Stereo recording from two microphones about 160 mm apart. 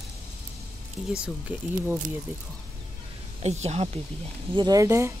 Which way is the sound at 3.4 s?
45° right (ahead or behind).